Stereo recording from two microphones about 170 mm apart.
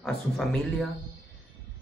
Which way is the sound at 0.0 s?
Centre (ahead or behind).